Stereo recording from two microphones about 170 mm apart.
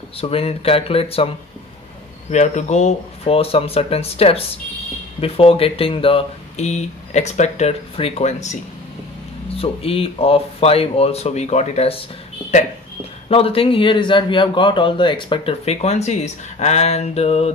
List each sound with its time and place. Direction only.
0.2 s a man's voice: 35° left (ahead or behind)
2.3 s a man's voice: 45° left (ahead or behind)
13.3 s a man's voice: 35° left (ahead or behind)